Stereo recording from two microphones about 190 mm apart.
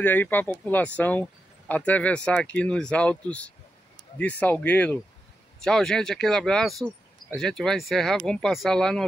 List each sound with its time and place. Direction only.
0.0 s speech: 10° left (ahead or behind)